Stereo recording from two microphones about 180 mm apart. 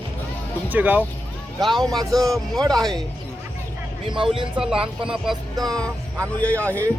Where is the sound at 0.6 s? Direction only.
10° right (ahead or behind).